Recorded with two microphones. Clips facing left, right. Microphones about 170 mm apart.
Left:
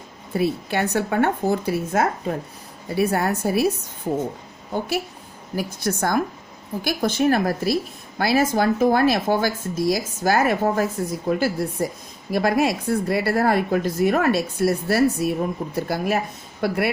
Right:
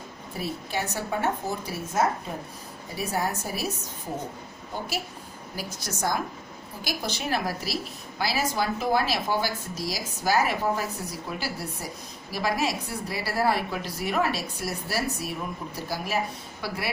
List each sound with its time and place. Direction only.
0.3 s speech: 65° left (ahead or behind)
5.5 s speech: 55° left (ahead or behind)